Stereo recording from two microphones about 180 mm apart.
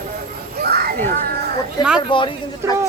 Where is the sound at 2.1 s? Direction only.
25° left (ahead or behind).